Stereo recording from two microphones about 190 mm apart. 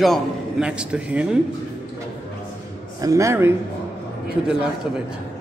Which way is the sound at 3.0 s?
15° right (ahead or behind).